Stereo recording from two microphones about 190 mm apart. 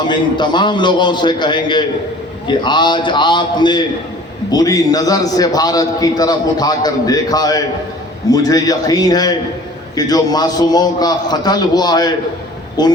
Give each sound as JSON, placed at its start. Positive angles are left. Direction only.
{"t": 0.0, "sound": "a man's voice", "side_deg": 25}